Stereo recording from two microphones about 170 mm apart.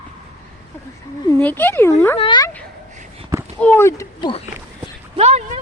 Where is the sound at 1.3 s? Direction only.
10° left (ahead or behind).